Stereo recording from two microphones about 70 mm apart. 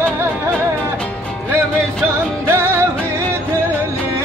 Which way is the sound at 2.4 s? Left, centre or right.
Right.